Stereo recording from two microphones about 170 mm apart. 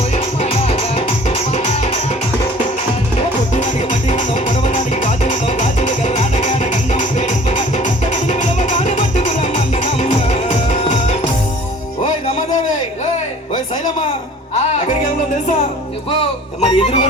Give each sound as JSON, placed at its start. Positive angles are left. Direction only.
{"t": 0.5, "sound": "music", "side_deg": 40}
{"t": 3.2, "sound": "music", "side_deg": 45}
{"t": 4.7, "sound": "music", "side_deg": 45}
{"t": 16.6, "sound": "music", "side_deg": 35}